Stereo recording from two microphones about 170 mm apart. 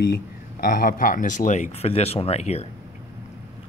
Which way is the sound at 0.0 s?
60° left (ahead or behind).